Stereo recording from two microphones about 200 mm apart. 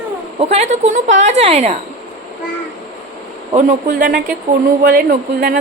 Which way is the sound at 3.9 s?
55° right (ahead or behind).